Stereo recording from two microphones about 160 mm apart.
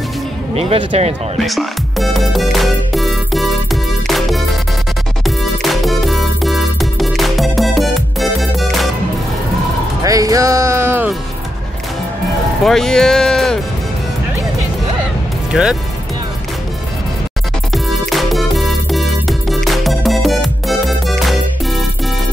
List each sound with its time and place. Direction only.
0.6 s speech: 40° right (ahead or behind)
1.4 s music: centre (ahead or behind)
10.0 s music: 20° right (ahead or behind)
12.6 s speech: centre (ahead or behind)
15.5 s speech: 5° right (ahead or behind)
18.1 s music: centre (ahead or behind)